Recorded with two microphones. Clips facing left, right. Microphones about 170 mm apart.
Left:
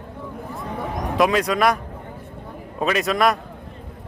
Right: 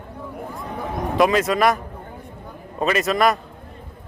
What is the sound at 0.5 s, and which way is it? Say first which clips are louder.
Vehicle: left 1 dB; centre (ahead or behind).